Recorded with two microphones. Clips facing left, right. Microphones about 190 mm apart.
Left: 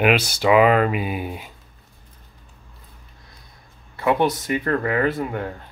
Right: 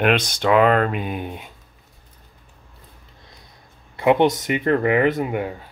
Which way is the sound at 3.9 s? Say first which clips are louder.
Right 3 dB; 20° right (ahead or behind).